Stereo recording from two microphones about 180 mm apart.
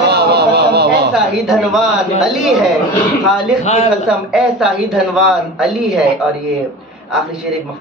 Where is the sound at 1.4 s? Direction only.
Centre (ahead or behind).